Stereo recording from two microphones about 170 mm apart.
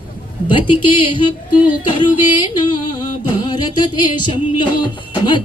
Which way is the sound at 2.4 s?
25° left (ahead or behind).